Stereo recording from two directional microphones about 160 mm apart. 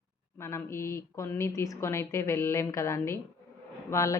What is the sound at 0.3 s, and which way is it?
A woman's voice, 15° left (ahead or behind).